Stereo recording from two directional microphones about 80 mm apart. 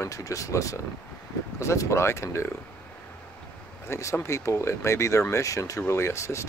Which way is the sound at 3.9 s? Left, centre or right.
Left.